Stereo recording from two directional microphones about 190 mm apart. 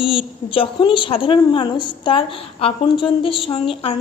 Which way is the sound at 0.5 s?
25° left (ahead or behind).